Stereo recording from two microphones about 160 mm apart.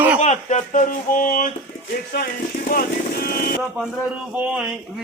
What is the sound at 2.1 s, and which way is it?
Speech, 70° left (ahead or behind).